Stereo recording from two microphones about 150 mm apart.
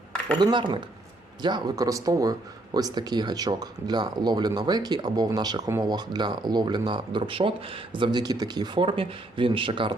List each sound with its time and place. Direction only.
0.3 s speech: 30° right (ahead or behind)